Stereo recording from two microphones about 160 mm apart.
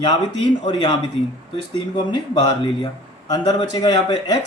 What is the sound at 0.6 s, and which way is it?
Speech, 30° left (ahead or behind).